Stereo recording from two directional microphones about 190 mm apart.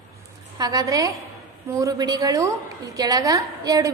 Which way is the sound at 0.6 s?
20° right (ahead or behind).